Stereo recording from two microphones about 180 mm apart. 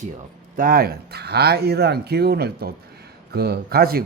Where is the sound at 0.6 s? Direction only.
55° right (ahead or behind).